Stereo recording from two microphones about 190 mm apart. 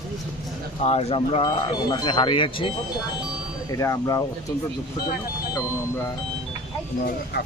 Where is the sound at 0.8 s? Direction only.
35° left (ahead or behind); by 4.2 s 15° left (ahead or behind).